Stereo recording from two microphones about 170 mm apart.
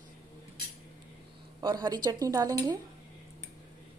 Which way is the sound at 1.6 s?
25° right (ahead or behind).